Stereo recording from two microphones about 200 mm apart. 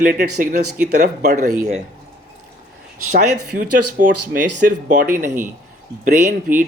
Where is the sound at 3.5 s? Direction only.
40° right (ahead or behind).